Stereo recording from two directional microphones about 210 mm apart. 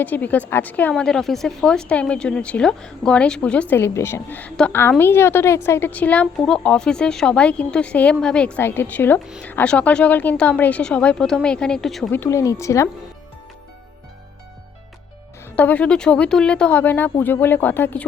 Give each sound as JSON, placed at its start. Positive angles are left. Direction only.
{"t": 0.0, "sound": "a woman's voice", "side_deg": 10}
{"t": 12.2, "sound": "speech", "side_deg": 15}
{"t": 15.4, "sound": "speech", "side_deg": 10}